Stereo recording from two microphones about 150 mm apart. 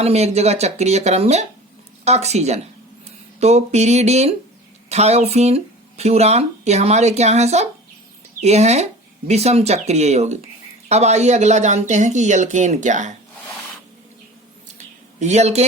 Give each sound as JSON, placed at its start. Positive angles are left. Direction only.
{"t": 0.0, "sound": "speech", "side_deg": -45}
{"t": 15.2, "sound": "speech", "side_deg": -50}